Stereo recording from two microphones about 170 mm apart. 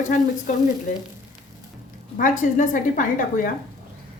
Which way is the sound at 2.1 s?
50° left (ahead or behind).